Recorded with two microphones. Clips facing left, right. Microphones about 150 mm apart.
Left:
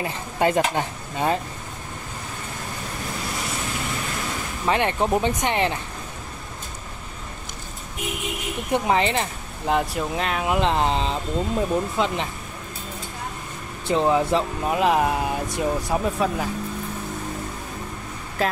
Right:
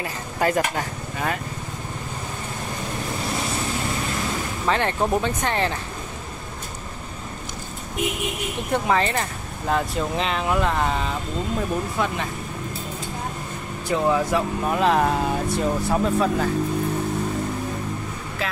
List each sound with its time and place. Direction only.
0.0 s speech: 20° left (ahead or behind)
4.6 s speech: 15° left (ahead or behind)
8.7 s speech: 20° left (ahead or behind)
10.1 s speech: 5° left (ahead or behind)
10.5 s speech: 25° left (ahead or behind)
13.8 s speech: 20° left (ahead or behind)
18.4 s speech: 45° left (ahead or behind)